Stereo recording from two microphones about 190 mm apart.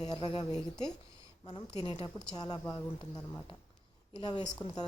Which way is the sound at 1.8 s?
25° left (ahead or behind).